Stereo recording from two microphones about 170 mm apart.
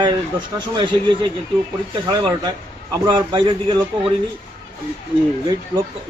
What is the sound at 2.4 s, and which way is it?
A man's voice, 25° right (ahead or behind).